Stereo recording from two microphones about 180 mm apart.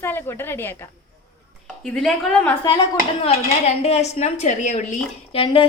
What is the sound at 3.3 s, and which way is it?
A woman's voice, 35° left (ahead or behind).